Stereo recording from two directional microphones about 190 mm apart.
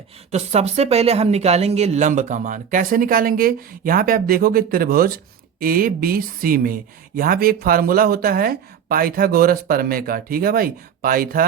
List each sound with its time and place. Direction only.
0.3 s speech: 35° right (ahead or behind)